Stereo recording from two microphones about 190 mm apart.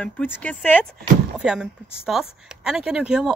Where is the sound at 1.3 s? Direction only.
5° right (ahead or behind).